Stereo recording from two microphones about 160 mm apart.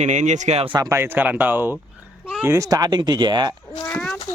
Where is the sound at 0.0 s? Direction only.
50° right (ahead or behind).